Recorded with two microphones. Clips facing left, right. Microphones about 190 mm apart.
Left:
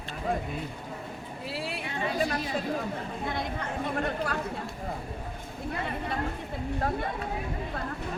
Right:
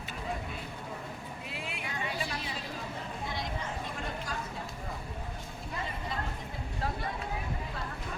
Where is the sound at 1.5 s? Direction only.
35° left (ahead or behind); by 4.4 s 60° left (ahead or behind).